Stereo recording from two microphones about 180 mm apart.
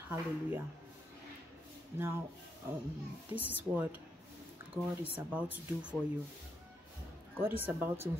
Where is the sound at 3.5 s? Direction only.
10° right (ahead or behind).